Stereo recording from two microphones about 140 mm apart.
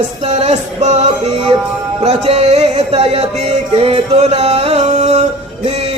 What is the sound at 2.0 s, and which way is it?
Music, 50° right (ahead or behind).